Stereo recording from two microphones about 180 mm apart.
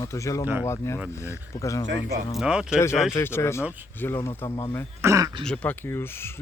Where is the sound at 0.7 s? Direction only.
15° left (ahead or behind).